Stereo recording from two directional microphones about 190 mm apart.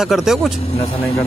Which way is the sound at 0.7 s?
30° left (ahead or behind).